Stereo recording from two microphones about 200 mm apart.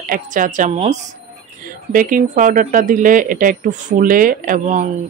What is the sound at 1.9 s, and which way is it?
Speech, 40° right (ahead or behind).